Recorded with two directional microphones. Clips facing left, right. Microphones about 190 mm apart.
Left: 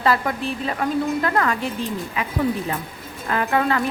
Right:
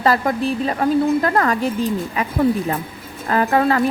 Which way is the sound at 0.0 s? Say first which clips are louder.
Right 3 dB; 40° right (ahead or behind).